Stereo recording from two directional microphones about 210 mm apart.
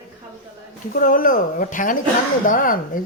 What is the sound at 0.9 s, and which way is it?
Speech, 40° left (ahead or behind).